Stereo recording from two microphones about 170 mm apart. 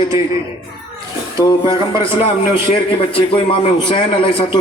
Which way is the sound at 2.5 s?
30° left (ahead or behind).